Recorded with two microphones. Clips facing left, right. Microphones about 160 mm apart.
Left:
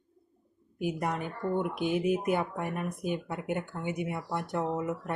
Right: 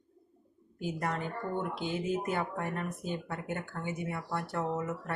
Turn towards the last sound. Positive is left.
turn(degrees=15)  # may be behind; listen again after turning